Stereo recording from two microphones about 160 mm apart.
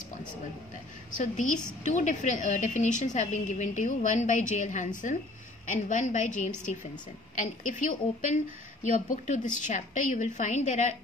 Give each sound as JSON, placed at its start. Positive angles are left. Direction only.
{"t": 1.1, "sound": "a woman's voice", "side_deg": 50}